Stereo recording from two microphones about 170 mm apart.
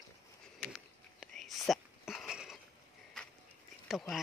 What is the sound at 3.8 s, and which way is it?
Speech, centre (ahead or behind).